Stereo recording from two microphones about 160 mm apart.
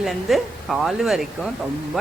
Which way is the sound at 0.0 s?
Centre (ahead or behind).